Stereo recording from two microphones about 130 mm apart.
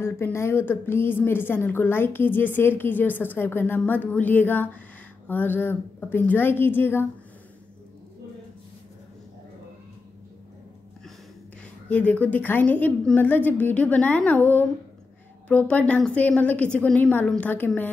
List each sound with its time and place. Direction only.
0.0 s a woman's voice: 20° left (ahead or behind)
11.9 s a woman's voice: 10° left (ahead or behind)